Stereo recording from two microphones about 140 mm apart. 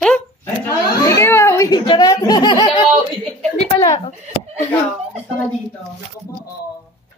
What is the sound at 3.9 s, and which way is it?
Speech, 45° left (ahead or behind).